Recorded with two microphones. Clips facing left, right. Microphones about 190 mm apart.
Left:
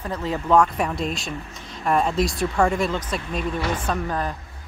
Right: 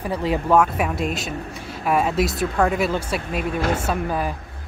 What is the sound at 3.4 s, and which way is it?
Speech, 55° right (ahead or behind).